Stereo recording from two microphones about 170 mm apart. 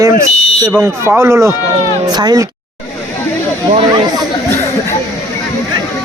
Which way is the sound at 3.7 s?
25° right (ahead or behind).